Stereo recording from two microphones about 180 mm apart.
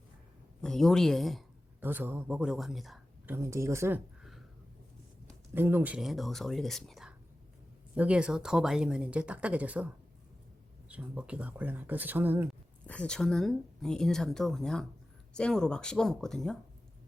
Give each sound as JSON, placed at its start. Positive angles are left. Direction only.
{"t": 0.6, "sound": "speech", "side_deg": 5}
{"t": 1.8, "sound": "speech", "side_deg": -10}
{"t": 3.3, "sound": "speech", "side_deg": -15}
{"t": 5.5, "sound": "speech", "side_deg": -10}
{"t": 12.5, "sound": "speech", "side_deg": 5}